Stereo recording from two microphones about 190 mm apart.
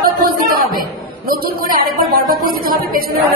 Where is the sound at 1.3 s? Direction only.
50° right (ahead or behind).